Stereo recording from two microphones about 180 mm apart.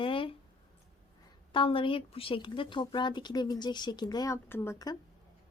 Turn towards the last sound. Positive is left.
turn(degrees=20)  # may be behind; listen again after turning